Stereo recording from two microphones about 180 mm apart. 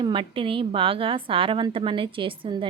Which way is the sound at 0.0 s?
25° right (ahead or behind).